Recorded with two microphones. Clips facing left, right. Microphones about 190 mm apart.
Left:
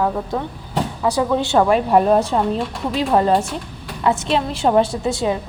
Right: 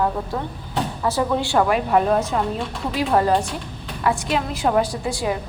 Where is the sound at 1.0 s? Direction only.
15° left (ahead or behind).